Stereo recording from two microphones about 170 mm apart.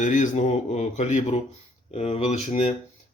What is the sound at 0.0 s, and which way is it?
Speech, 50° left (ahead or behind).